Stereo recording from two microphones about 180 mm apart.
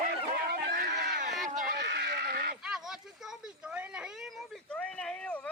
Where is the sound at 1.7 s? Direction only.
70° right (ahead or behind).